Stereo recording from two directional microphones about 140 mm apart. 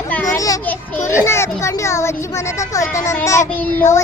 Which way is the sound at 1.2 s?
20° left (ahead or behind).